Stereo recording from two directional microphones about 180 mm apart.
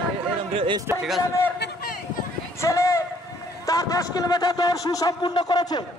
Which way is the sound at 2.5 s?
15° left (ahead or behind).